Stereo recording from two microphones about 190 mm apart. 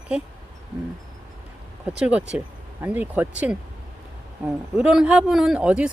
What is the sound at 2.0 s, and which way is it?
A man's voice, 5° right (ahead or behind).